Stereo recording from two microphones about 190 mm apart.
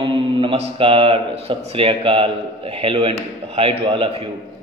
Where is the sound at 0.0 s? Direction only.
25° right (ahead or behind).